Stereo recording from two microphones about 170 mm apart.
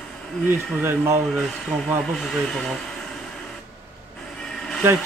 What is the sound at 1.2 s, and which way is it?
Speech, centre (ahead or behind).